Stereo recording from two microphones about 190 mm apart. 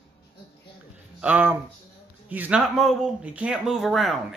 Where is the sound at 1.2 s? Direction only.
10° right (ahead or behind).